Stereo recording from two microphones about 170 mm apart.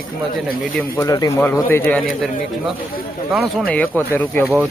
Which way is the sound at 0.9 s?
20° left (ahead or behind).